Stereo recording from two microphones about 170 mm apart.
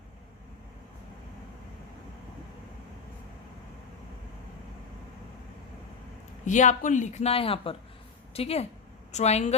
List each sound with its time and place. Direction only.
6.4 s a woman's voice: 45° left (ahead or behind)